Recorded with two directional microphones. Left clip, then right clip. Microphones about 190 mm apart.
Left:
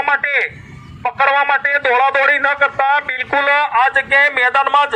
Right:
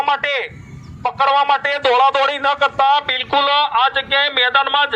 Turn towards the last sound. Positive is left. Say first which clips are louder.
# left 2 dB
turn(degrees=30)  # may be behind; listen again after turning